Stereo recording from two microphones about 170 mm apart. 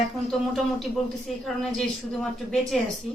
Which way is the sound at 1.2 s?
Centre (ahead or behind).